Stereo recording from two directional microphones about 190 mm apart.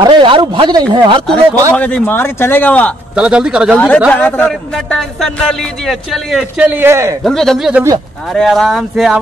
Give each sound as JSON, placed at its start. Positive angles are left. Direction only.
{"t": 0.0, "sound": "speech", "side_deg": -25}
{"t": 1.7, "sound": "a man's voice", "side_deg": 10}
{"t": 3.2, "sound": "a man's voice", "side_deg": -5}
{"t": 3.7, "sound": "a man's voice", "side_deg": 5}
{"t": 7.2, "sound": "a man's voice", "side_deg": 0}